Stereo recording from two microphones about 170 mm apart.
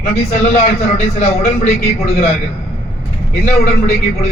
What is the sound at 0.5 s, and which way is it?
A man's voice, 40° left (ahead or behind).